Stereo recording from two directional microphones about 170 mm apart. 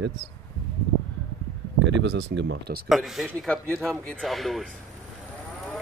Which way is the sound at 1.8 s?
90° right.